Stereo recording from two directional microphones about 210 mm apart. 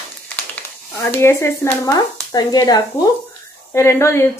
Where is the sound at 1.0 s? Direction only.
10° left (ahead or behind).